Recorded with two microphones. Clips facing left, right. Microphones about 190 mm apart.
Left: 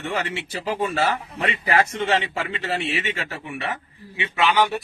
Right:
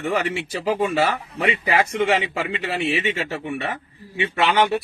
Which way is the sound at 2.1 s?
15° right (ahead or behind).